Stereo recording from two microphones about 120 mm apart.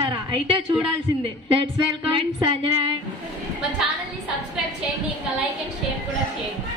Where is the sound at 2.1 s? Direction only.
45° right (ahead or behind).